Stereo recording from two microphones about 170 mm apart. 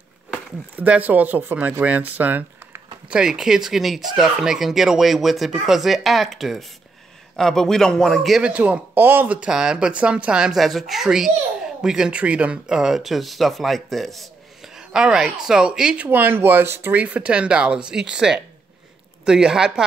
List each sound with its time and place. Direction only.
0.3 s speech: 5° right (ahead or behind)